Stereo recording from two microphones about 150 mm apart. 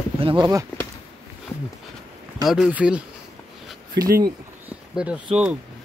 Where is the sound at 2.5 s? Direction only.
5° right (ahead or behind).